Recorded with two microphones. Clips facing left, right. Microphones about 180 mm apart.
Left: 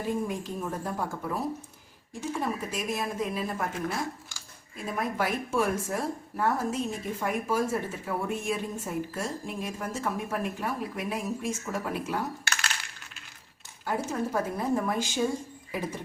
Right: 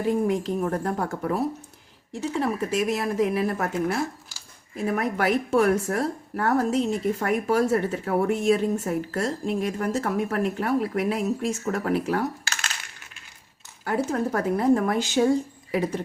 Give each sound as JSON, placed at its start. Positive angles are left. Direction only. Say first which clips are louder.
{"t": 0.1, "sound": "a woman's voice", "louder": "right 8 dB", "side_deg": -70}
{"t": 13.8, "sound": "a woman's voice", "louder": "right 5 dB", "side_deg": -65}